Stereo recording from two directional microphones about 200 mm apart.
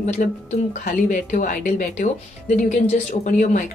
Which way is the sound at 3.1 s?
40° left (ahead or behind).